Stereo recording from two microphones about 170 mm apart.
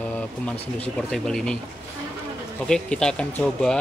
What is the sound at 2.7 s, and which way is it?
Speech, 5° left (ahead or behind).